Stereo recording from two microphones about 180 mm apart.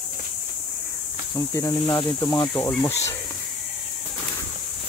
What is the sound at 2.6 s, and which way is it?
Speech, 10° left (ahead or behind).